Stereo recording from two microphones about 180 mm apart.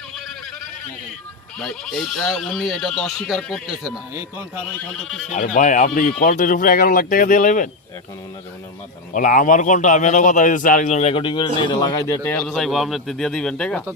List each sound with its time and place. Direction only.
1.5 s speech: centre (ahead or behind)
5.3 s a man's voice: 45° left (ahead or behind)
9.1 s a man's voice: 45° left (ahead or behind); by 12.2 s 25° left (ahead or behind)
12.2 s speech: 10° left (ahead or behind)